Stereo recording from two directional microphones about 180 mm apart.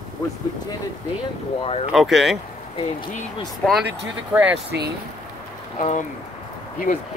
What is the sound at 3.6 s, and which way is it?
Speech, 5° left (ahead or behind).